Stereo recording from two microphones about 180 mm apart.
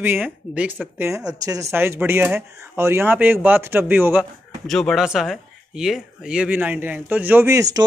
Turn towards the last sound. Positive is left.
turn(degrees=-15)  # may be behind; listen again after turning